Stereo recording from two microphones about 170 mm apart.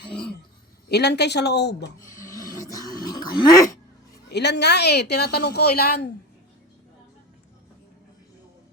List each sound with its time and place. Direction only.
0.9 s speech: 75° left (ahead or behind)
2.2 s a sound: 20° left (ahead or behind)
4.3 s speech: 80° left